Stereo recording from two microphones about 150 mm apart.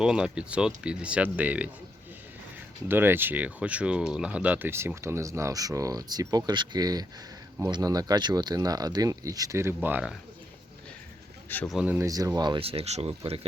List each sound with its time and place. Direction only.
0.0 s speech: 5° right (ahead or behind)
2.9 s speech: 15° right (ahead or behind)
11.4 s speech: 10° left (ahead or behind)
11.7 s speech: 10° right (ahead or behind)
12.0 s speech: 25° right (ahead or behind); by 13.4 s 40° right (ahead or behind)